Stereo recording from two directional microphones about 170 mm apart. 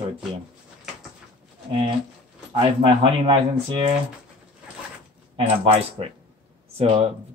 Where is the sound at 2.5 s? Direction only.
30° right (ahead or behind).